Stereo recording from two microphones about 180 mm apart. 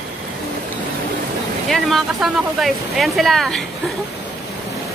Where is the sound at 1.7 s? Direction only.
Centre (ahead or behind).